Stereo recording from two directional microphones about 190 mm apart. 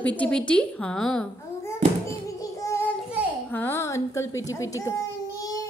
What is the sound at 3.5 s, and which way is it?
Babbling, 10° left (ahead or behind).